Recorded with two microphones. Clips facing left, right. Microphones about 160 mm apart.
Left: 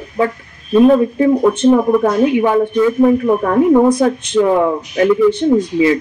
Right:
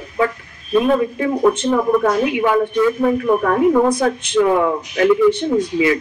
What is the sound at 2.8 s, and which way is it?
Speech, 25° left (ahead or behind).